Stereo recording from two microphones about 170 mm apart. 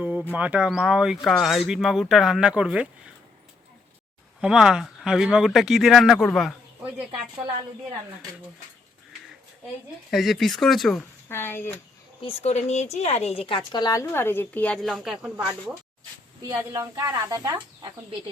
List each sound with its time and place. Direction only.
0.0 s a sound: 10° right (ahead or behind)
0.3 s speech: 10° right (ahead or behind)
4.4 s speech: 5° right (ahead or behind)
10.1 s speech: centre (ahead or behind)
11.3 s speech: 15° left (ahead or behind)
12.2 s speech: 35° left (ahead or behind)
13.7 s speech: 20° left (ahead or behind); by 15.4 s 5° right (ahead or behind)
16.5 s speech: 25° right (ahead or behind)